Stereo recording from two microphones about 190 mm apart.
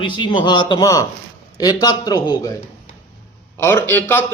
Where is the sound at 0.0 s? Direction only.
25° left (ahead or behind).